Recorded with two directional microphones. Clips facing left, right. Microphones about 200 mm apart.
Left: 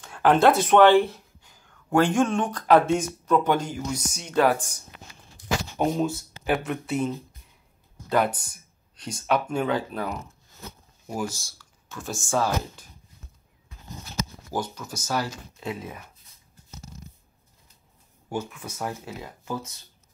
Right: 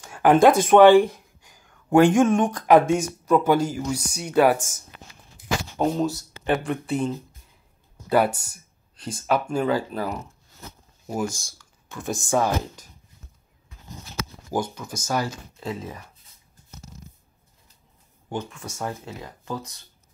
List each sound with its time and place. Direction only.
0.0 s a sound: 10° right (ahead or behind)
0.7 s speech: 10° right (ahead or behind)
5.8 s speech: 5° left (ahead or behind)
11.2 s speech: 5° left (ahead or behind)
11.9 s speech: 15° right (ahead or behind)
14.5 s speech: 10° right (ahead or behind)
15.6 s speech: 5° left (ahead or behind)
18.3 s speech: 5° left (ahead or behind)